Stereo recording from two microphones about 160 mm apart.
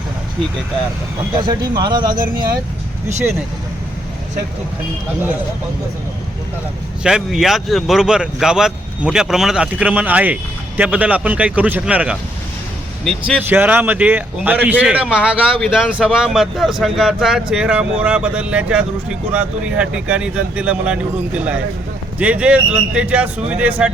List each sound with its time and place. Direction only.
1.5 s speech: 30° right (ahead or behind)
7.0 s speech: 5° right (ahead or behind)
13.5 s speech: 10° right (ahead or behind)